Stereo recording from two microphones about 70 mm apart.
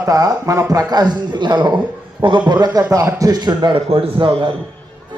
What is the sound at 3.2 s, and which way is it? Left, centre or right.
Speech, right.